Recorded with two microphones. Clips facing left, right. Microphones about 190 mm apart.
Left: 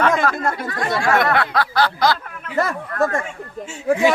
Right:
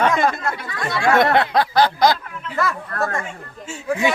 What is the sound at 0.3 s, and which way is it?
Speech, 45° left (ahead or behind).